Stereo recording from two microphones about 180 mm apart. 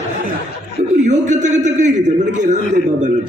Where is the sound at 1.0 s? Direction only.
40° right (ahead or behind).